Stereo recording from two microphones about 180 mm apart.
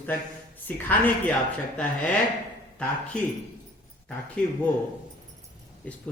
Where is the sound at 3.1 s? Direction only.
5° left (ahead or behind).